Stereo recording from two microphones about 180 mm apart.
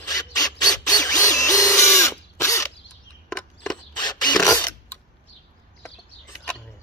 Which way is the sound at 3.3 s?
5° left (ahead or behind).